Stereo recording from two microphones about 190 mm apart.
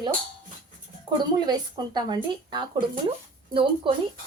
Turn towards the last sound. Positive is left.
turn(degrees=-30)  # may be behind; listen again after turning